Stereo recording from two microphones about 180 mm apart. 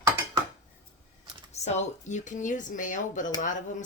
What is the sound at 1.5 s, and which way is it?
Speech, 40° left (ahead or behind).